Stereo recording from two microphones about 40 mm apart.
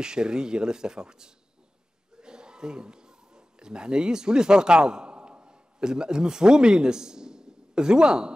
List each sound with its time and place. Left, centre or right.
0.0 s speech: centre